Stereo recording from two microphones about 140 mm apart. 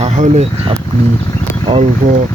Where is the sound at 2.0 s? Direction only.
60° right (ahead or behind).